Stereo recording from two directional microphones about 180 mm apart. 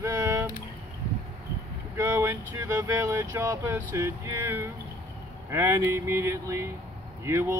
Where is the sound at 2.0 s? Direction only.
15° right (ahead or behind).